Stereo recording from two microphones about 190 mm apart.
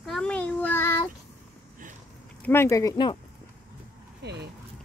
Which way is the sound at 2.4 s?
10° left (ahead or behind).